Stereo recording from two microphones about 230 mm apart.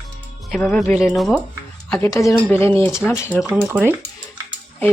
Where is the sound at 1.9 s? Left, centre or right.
Centre.